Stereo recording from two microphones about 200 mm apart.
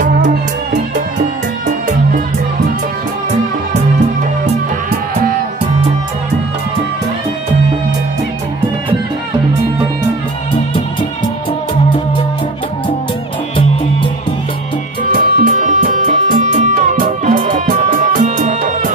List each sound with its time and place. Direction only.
15.0 s music: 40° right (ahead or behind)